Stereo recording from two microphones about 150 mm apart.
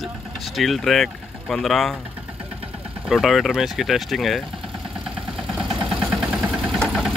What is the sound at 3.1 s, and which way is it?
Speech, centre (ahead or behind).